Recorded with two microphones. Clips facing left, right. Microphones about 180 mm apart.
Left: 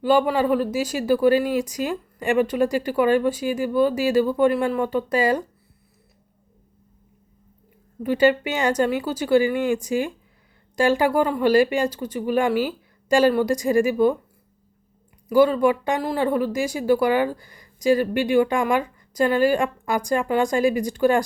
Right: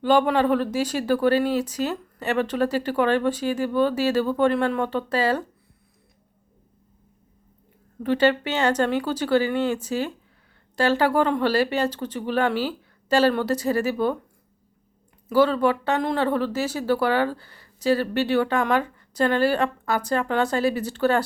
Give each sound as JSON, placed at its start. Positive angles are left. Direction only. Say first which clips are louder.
{"t": 0.0, "sound": "speech", "louder": "even", "side_deg": 10}
{"t": 8.0, "sound": "speech", "louder": "left 2 dB", "side_deg": 10}
{"t": 15.3, "sound": "speech", "louder": "left 2 dB", "side_deg": 10}